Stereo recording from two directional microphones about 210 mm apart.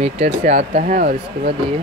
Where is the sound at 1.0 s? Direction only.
50° right (ahead or behind).